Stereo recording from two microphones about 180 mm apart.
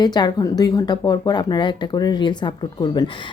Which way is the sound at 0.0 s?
25° left (ahead or behind).